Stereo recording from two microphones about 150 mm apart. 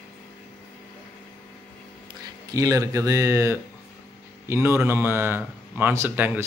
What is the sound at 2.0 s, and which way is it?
Speech, 25° right (ahead or behind).